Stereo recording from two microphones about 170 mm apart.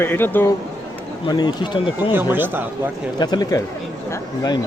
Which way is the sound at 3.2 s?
25° left (ahead or behind).